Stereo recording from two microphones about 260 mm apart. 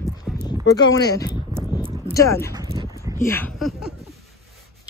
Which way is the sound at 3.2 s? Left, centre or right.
Centre.